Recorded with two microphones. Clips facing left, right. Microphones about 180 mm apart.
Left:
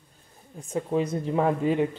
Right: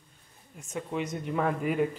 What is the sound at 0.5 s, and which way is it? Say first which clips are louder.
Speech: left 7 dB; 30° left (ahead or behind).